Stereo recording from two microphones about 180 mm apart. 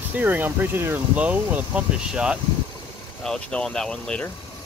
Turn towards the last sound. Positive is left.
turn(degrees=5)  # may be behind; listen again after turning